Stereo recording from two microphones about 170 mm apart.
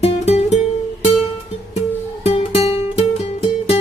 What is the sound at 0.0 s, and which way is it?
Music, 40° left (ahead or behind).